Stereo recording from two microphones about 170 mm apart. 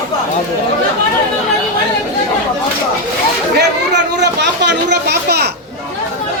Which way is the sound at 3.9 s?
90° right.